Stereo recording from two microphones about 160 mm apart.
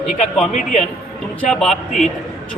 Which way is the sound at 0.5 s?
45° left (ahead or behind).